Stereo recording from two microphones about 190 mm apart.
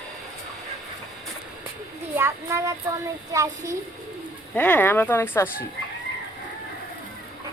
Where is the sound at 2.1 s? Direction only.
15° right (ahead or behind).